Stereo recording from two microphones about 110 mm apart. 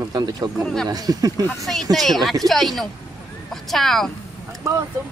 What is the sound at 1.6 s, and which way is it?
Speech, centre (ahead or behind).